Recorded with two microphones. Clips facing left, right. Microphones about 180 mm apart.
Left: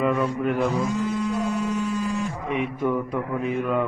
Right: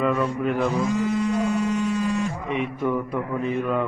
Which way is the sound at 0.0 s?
Centre (ahead or behind).